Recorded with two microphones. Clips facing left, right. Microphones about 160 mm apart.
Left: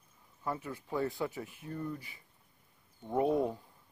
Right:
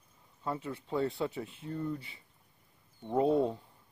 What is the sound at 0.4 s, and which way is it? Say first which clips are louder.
Speech: right 1 dB; 25° right (ahead or behind).